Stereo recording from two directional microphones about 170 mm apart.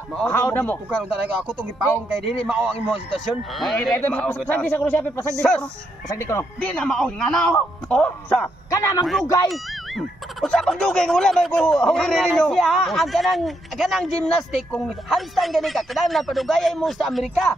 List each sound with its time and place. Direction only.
0.1 s speech: 5° left (ahead or behind)
0.8 s speech: 10° right (ahead or behind)
6.0 s speech: 15° left (ahead or behind)
8.6 s a man's voice: 20° left (ahead or behind)
9.0 s speech: centre (ahead or behind)